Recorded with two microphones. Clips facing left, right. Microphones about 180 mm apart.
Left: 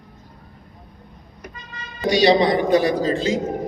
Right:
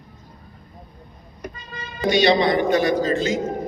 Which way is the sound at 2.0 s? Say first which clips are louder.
Left 1 dB; 35° left (ahead or behind).